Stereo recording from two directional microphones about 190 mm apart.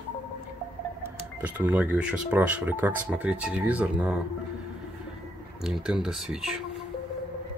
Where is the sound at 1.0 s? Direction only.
10° right (ahead or behind).